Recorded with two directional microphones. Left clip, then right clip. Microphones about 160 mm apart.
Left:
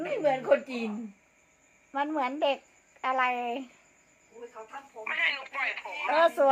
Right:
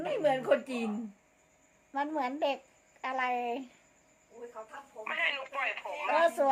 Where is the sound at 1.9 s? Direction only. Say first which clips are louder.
Left 3 dB; 35° left (ahead or behind).